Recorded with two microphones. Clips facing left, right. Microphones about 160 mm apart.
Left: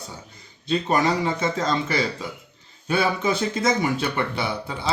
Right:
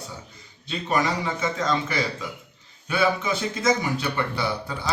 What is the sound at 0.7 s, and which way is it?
Speech, 35° left (ahead or behind).